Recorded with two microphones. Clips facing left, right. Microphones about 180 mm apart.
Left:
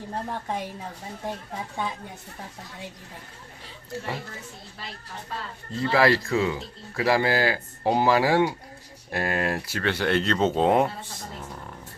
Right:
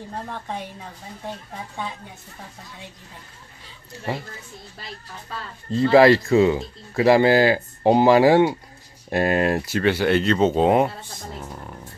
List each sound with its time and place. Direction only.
5.8 s speech: 20° right (ahead or behind)
9.8 s speech: 5° right (ahead or behind)